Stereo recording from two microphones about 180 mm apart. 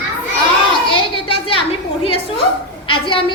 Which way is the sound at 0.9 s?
30° left (ahead or behind).